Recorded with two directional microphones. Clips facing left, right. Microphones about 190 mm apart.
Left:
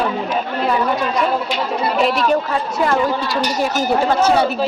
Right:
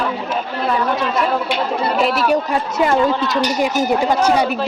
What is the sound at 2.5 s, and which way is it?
Speech, 20° right (ahead or behind).